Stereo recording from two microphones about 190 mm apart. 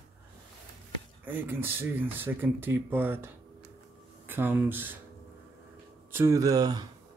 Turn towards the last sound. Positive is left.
turn(degrees=-20)  # may be behind; listen again after turning